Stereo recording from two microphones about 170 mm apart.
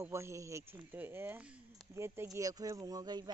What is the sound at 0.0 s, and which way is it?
Speech, 15° right (ahead or behind).